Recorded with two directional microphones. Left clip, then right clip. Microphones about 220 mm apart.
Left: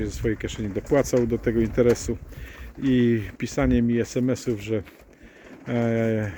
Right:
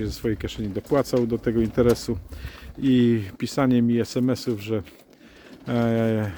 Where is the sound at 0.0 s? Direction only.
15° right (ahead or behind).